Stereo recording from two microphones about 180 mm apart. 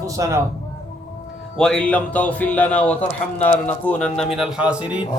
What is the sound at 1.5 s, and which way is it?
A man's voice, 5° left (ahead or behind).